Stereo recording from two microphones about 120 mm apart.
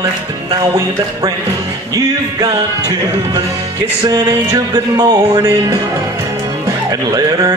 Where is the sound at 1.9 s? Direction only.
30° right (ahead or behind).